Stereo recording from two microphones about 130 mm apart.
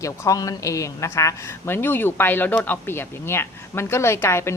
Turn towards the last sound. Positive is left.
turn(degrees=20)  # may be behind; listen again after turning